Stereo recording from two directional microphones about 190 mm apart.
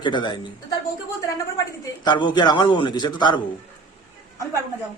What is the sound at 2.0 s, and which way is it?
A man's voice, 25° left (ahead or behind).